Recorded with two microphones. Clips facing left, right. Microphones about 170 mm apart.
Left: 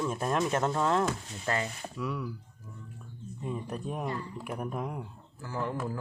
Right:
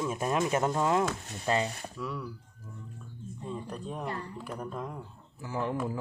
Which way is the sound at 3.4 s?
10° left (ahead or behind).